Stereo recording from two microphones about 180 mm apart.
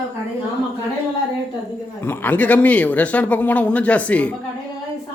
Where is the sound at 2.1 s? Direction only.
10° left (ahead or behind).